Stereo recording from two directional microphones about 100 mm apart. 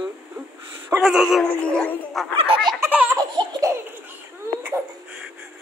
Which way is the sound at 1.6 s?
10° left (ahead or behind).